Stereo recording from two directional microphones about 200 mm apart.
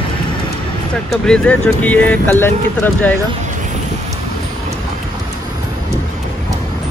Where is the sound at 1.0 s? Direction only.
5° left (ahead or behind).